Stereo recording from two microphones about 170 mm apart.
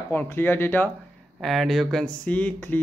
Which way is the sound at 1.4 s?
Centre (ahead or behind).